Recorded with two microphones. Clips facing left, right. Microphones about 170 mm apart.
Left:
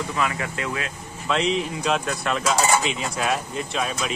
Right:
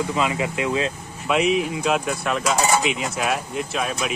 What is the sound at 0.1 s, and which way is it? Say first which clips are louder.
Speech: right 3 dB; 20° right (ahead or behind).